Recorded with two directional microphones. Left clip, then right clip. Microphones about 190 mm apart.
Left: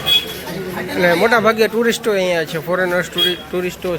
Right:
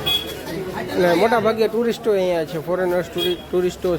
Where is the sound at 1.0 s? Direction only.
10° right (ahead or behind).